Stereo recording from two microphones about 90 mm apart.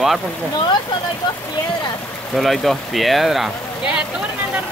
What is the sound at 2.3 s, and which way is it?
Speech, centre (ahead or behind).